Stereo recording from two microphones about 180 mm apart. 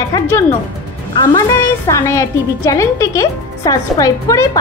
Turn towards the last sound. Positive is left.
turn(degrees=20)  # may be behind; listen again after turning